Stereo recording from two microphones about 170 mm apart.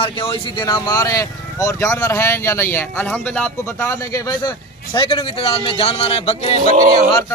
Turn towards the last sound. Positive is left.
turn(degrees=-50)  # may be behind; listen again after turning